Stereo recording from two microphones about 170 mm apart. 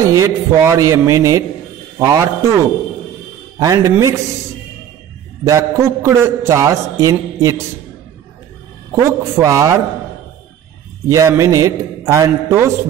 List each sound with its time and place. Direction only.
0.0 s a man's voice: 20° right (ahead or behind)
5.4 s a man's voice: 20° right (ahead or behind)
8.9 s a man's voice: 20° right (ahead or behind)
11.1 s a man's voice: 20° right (ahead or behind)